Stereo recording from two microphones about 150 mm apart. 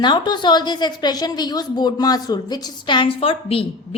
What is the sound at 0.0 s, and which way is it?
A woman's voice, 30° left (ahead or behind).